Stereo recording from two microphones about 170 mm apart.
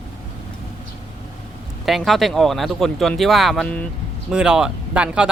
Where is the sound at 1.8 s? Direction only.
Centre (ahead or behind).